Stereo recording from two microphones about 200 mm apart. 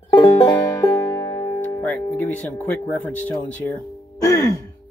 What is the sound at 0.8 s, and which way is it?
Music, 15° left (ahead or behind).